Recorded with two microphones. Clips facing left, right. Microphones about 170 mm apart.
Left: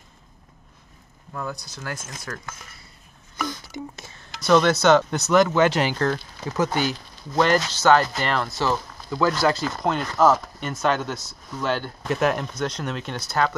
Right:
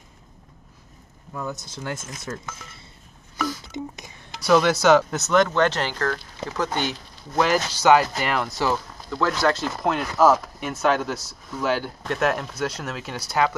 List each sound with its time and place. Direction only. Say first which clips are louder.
1.3 s speech: right 1 dB; 20° right (ahead or behind)
3.6 s speech: right 2 dB; 20° right (ahead or behind)
9.1 s speech: left 1 dB; 5° left (ahead or behind)